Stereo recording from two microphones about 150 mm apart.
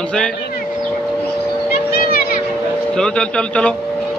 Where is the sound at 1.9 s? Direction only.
80° left.